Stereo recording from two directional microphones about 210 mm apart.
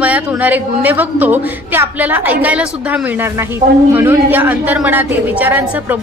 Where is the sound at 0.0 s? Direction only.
5° right (ahead or behind).